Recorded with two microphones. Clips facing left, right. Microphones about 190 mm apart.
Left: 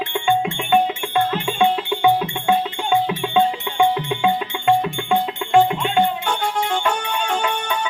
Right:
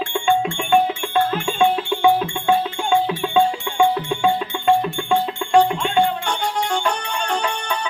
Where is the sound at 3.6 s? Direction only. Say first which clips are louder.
Even; centre (ahead or behind).